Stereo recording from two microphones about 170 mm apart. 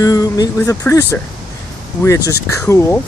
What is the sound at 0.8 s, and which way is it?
Speech, 15° left (ahead or behind).